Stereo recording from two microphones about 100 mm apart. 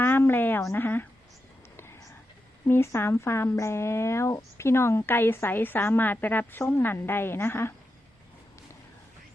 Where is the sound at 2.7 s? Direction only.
25° left (ahead or behind).